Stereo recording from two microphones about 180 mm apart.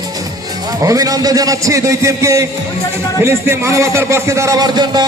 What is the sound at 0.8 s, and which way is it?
A man's voice, 20° right (ahead or behind).